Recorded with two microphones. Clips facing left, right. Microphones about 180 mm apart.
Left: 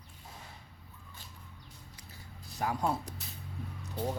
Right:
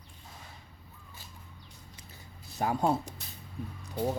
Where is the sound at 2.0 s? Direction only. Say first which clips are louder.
Even; 20° right (ahead or behind).